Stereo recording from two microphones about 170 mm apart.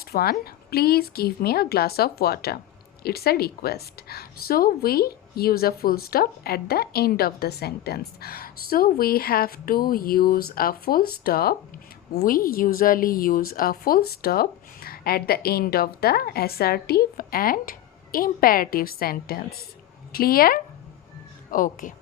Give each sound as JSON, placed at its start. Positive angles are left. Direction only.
{"t": 0.0, "sound": "a woman's voice", "side_deg": 65}